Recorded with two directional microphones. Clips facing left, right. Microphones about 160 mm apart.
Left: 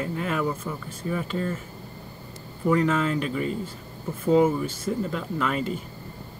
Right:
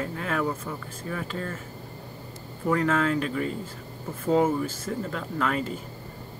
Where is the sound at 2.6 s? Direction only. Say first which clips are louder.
Left 2 dB; 5° left (ahead or behind).